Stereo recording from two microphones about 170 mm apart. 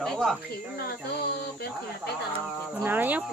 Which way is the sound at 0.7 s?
65° left (ahead or behind).